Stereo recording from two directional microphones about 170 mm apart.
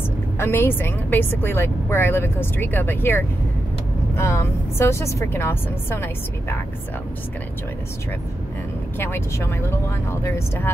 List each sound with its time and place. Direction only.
0.4 s speech: 15° left (ahead or behind)
9.0 s speech: 15° left (ahead or behind)